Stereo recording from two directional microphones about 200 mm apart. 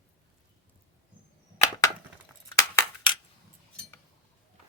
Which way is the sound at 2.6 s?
25° left (ahead or behind).